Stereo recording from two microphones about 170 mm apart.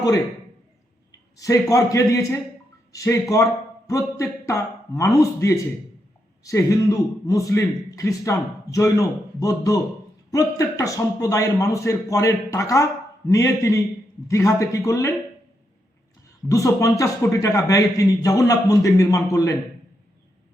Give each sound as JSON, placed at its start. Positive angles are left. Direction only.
{"t": 1.4, "sound": "a man's voice", "side_deg": 20}
{"t": 16.5, "sound": "a man's voice", "side_deg": 20}